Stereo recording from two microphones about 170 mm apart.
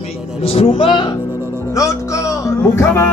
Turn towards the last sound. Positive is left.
turn(degrees=15)  # may be behind; listen again after turning